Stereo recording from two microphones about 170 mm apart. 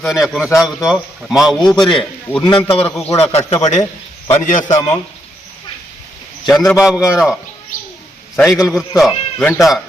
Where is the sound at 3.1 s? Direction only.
40° left (ahead or behind).